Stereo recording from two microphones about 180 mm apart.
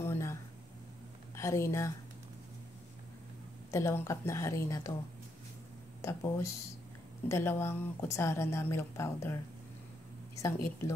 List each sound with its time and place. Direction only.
0.0 s a sound: 15° left (ahead or behind)
1.3 s speech: 15° left (ahead or behind)
3.7 s a woman's voice: 15° left (ahead or behind)
6.0 s a woman's voice: 15° left (ahead or behind)